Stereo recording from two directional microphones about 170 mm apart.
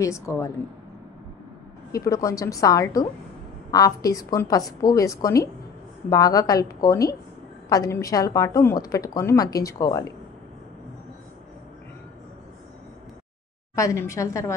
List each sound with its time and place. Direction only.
0.0 s a woman's voice: 20° left (ahead or behind)
1.9 s a woman's voice: 20° left (ahead or behind)
13.7 s a woman's voice: 15° left (ahead or behind)